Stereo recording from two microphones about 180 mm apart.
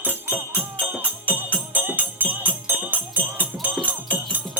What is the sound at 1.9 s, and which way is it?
Music, 10° right (ahead or behind).